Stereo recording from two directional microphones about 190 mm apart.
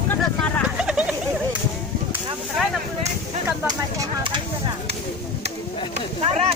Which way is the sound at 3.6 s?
20° right (ahead or behind).